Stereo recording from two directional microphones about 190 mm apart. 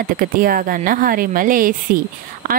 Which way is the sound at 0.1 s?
50° right (ahead or behind).